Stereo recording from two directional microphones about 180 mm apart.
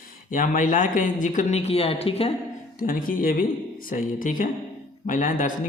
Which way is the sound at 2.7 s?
50° left (ahead or behind).